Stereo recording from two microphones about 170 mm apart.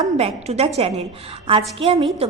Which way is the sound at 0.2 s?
35° right (ahead or behind).